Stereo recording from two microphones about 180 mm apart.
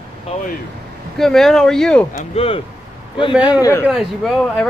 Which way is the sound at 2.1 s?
35° left (ahead or behind).